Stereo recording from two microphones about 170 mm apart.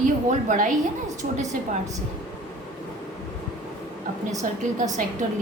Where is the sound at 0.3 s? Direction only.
50° right (ahead or behind).